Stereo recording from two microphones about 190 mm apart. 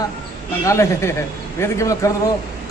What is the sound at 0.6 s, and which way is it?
A man's voice, 15° left (ahead or behind).